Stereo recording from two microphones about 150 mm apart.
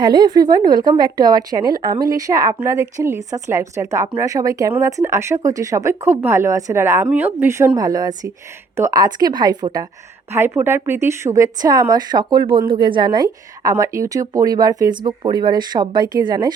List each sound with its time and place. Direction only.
0.0 s speech: 30° right (ahead or behind)
10.3 s speech: 15° right (ahead or behind)